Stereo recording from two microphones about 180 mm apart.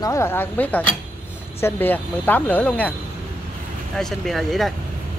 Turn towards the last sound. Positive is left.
turn(degrees=0)  # may be behind; listen again after turning